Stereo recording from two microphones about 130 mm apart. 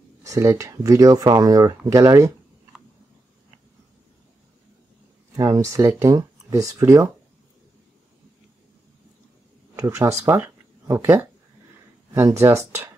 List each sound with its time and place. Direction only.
0.2 s speech: 25° right (ahead or behind)
5.3 s speech: 25° right (ahead or behind)
9.8 s speech: 25° right (ahead or behind)